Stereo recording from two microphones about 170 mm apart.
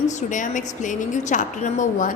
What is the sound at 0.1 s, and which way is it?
A woman's voice, 45° left (ahead or behind).